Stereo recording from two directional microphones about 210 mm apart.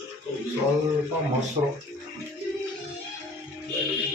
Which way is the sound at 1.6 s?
25° right (ahead or behind).